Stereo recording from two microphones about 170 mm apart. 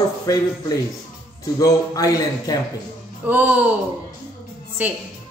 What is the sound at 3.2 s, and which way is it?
Speech, 10° right (ahead or behind).